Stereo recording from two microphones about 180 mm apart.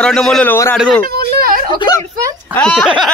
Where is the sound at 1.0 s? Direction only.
55° right (ahead or behind).